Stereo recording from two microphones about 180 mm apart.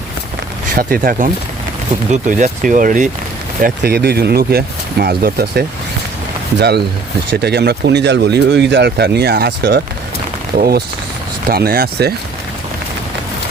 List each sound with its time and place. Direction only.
0.8 s speech: 50° right (ahead or behind)
3.6 s speech: 60° right (ahead or behind)